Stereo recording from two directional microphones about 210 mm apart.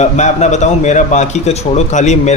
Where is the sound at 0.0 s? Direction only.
35° left (ahead or behind).